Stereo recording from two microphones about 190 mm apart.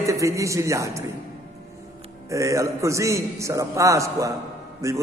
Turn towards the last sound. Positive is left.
turn(degrees=-15)  # may be behind; listen again after turning